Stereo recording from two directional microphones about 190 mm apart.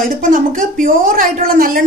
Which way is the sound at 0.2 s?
40° right (ahead or behind).